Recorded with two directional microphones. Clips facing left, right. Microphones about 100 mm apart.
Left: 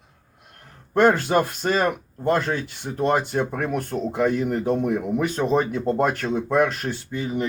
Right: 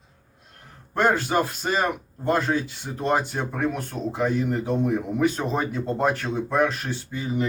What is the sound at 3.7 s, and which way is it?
A man's voice, 50° left (ahead or behind).